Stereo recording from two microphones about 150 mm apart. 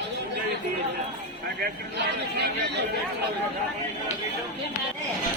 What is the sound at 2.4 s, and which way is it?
Speech, 90° right.